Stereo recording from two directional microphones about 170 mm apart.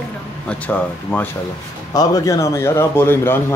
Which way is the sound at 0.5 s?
10° left (ahead or behind).